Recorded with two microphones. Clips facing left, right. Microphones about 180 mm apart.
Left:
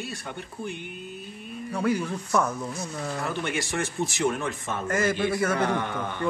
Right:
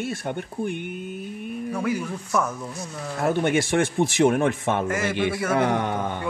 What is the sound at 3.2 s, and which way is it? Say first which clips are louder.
A man's voice: right 11 dB; 55° right (ahead or behind).